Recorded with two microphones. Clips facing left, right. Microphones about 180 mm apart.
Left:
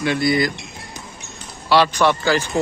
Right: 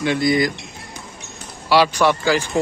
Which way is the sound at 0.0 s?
20° right (ahead or behind).